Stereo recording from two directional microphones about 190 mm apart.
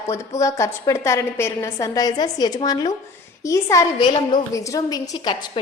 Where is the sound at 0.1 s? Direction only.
15° left (ahead or behind).